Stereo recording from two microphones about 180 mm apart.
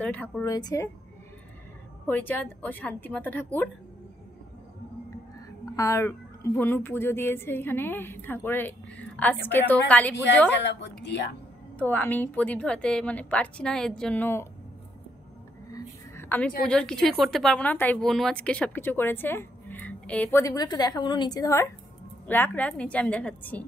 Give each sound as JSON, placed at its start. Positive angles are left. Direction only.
{"t": 0.0, "sound": "speech", "side_deg": 10}
{"t": 0.5, "sound": "speech", "side_deg": 20}
{"t": 2.0, "sound": "speech", "side_deg": 10}
{"t": 5.8, "sound": "speech", "side_deg": 15}
{"t": 10.5, "sound": "a woman's voice", "side_deg": 75}
{"t": 11.8, "sound": "speech", "side_deg": 10}
{"t": 15.7, "sound": "a sound", "side_deg": 10}
{"t": 16.6, "sound": "speech", "side_deg": 5}